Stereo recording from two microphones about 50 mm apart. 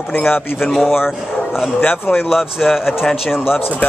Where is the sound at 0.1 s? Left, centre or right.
Left.